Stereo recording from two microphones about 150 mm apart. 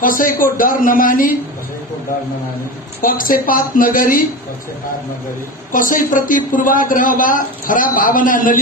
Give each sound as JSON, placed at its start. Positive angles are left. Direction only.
{"t": 0.0, "sound": "speech", "side_deg": 65}
{"t": 3.0, "sound": "speech", "side_deg": 70}
{"t": 5.7, "sound": "a man's voice", "side_deg": 65}